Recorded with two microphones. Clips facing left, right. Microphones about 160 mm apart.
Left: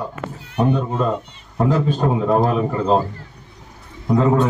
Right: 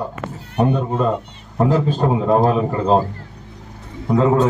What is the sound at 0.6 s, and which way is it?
Speech, 5° right (ahead or behind).